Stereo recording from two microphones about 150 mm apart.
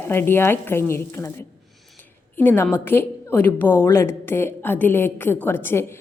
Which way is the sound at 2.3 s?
15° left (ahead or behind).